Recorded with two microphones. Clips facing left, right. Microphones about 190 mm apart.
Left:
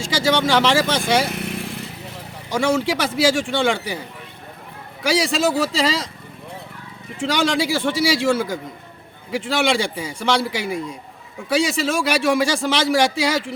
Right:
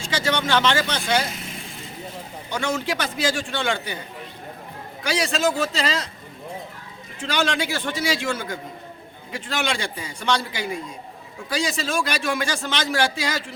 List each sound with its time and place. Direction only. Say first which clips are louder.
0.3 s speech: left 4 dB; 90° left; by 1.9 s 75° left (ahead or behind)
2.5 s speech: left 6 dB; 90° left
5.0 s speech: left 4 dB; 90° left
7.2 s speech: left 4 dB; 90° left